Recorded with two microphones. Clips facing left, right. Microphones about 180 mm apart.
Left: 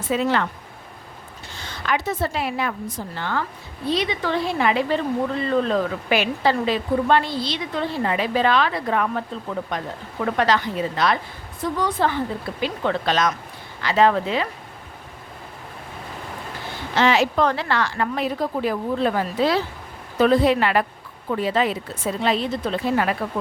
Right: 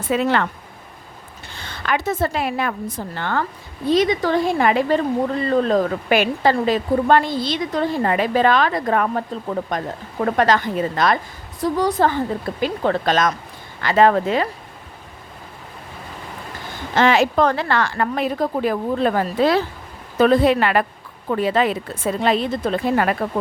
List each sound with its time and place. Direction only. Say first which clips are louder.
0.1 s a woman's voice: right 2 dB; 60° right (ahead or behind)
1.5 s a woman's voice: right 2 dB; 60° right (ahead or behind)
3.8 s a woman's voice: right 6 dB; 45° right (ahead or behind)
11.6 s a woman's voice: right 4 dB; 40° right (ahead or behind)
16.9 s a woman's voice: right 3 dB; 50° right (ahead or behind)